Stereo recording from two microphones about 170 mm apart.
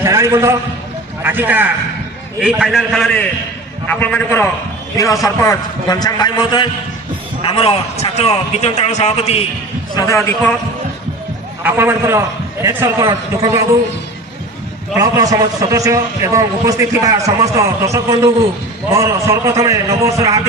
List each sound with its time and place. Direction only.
0.0 s a man's voice: 15° right (ahead or behind); by 9.4 s 35° left (ahead or behind)
9.9 s a man's voice: 20° left (ahead or behind)
11.6 s a man's voice: 15° right (ahead or behind)
14.9 s a man's voice: 20° right (ahead or behind)